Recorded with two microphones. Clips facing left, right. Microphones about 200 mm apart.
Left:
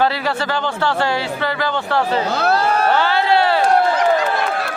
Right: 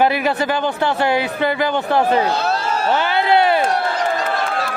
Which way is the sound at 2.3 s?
60° left (ahead or behind).